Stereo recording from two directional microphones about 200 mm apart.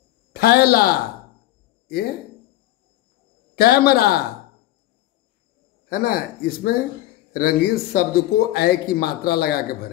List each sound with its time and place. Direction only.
0.3 s a man's voice: 50° left (ahead or behind)
3.5 s speech: 50° left (ahead or behind)
5.9 s speech: 50° left (ahead or behind)